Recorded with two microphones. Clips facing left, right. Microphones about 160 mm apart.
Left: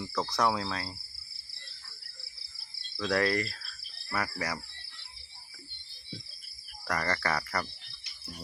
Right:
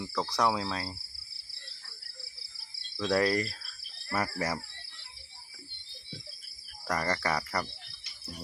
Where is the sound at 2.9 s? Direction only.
15° right (ahead or behind).